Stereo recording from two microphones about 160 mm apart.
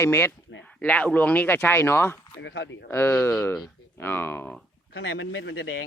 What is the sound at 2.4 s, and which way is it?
Speech, 90° left.